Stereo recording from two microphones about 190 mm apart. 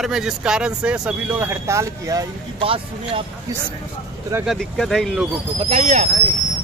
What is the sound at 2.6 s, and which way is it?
Speech, 30° right (ahead or behind).